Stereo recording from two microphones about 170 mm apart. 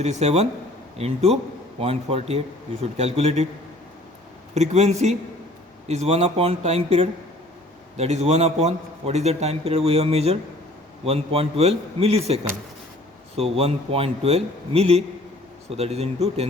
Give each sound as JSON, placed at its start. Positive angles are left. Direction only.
{"t": 0.0, "sound": "a man's voice", "side_deg": -40}
{"t": 4.5, "sound": "a man's voice", "side_deg": -40}